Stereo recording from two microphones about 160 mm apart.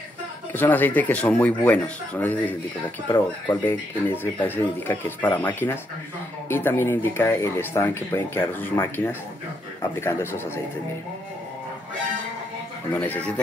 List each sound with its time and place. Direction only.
0.5 s speech: 10° left (ahead or behind)
12.9 s speech: 10° left (ahead or behind)